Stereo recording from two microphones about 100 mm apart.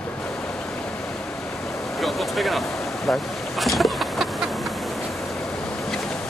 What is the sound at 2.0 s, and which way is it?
Vehicle, centre (ahead or behind).